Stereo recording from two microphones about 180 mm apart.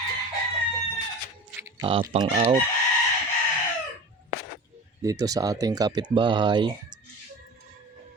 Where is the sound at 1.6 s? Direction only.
15° right (ahead or behind).